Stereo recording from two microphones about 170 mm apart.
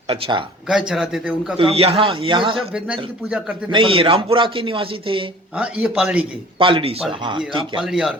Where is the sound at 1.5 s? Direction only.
35° right (ahead or behind).